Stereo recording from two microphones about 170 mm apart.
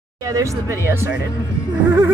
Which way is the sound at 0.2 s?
20° right (ahead or behind).